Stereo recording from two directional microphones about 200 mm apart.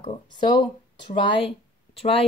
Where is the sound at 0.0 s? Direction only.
25° left (ahead or behind).